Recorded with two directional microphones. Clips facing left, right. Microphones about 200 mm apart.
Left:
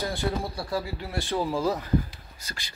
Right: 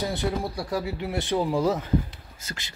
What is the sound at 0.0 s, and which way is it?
Speech, 20° right (ahead or behind).